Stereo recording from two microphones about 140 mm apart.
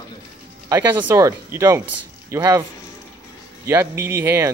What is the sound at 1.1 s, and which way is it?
Speech, 20° right (ahead or behind).